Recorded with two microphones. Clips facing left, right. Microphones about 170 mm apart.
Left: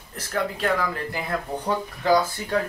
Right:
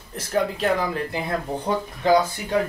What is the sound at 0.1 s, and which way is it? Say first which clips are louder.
Speech: right 4 dB; 25° right (ahead or behind).